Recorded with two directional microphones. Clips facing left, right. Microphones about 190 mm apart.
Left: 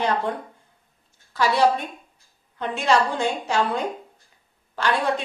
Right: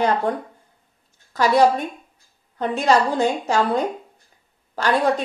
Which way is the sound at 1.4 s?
45° right (ahead or behind).